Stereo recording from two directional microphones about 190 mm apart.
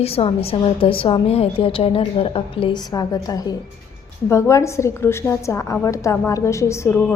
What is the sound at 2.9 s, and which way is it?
A woman's voice, 20° left (ahead or behind).